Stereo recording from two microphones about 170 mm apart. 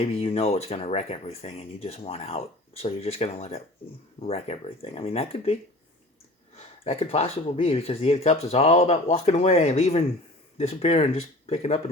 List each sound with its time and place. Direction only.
0.0 s speech: 35° left (ahead or behind)
6.6 s speech: 40° left (ahead or behind)